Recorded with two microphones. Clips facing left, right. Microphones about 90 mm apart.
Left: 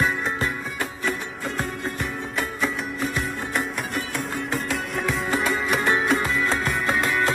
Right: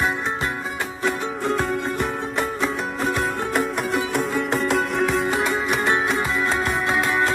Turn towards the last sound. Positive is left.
turn(degrees=0)  # may be behind; listen again after turning